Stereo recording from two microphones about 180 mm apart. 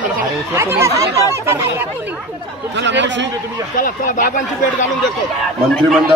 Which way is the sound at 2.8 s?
85° right.